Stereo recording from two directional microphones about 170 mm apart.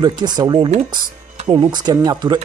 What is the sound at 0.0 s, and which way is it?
Speech, 25° right (ahead or behind).